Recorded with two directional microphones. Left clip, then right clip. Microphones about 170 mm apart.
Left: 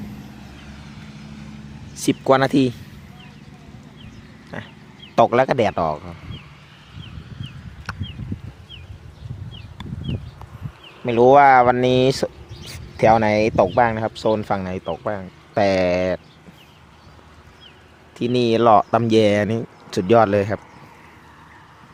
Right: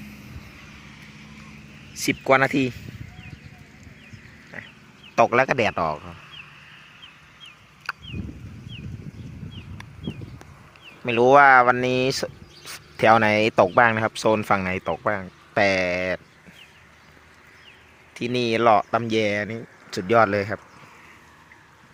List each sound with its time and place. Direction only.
1.9 s speech: 10° left (ahead or behind)
5.1 s speech: 10° left (ahead or behind)
11.0 s speech: 10° left (ahead or behind)
15.5 s speech: 10° left (ahead or behind)
18.1 s speech: 15° left (ahead or behind)